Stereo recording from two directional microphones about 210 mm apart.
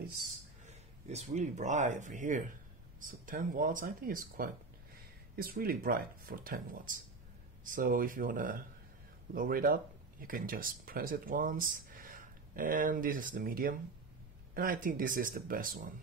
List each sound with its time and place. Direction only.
0.7 s speech: 30° right (ahead or behind)